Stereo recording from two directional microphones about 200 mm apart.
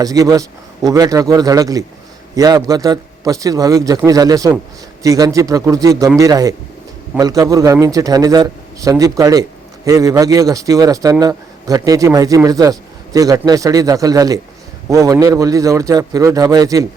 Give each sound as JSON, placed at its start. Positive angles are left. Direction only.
{"t": 0.0, "sound": "a man's voice", "side_deg": -15}